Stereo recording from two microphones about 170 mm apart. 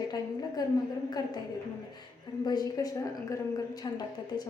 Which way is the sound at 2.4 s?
25° left (ahead or behind).